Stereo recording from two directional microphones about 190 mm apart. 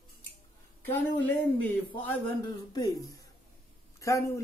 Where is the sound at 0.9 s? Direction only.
10° left (ahead or behind).